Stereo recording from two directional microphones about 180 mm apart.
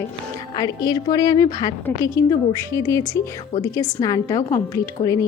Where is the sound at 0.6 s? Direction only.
20° left (ahead or behind).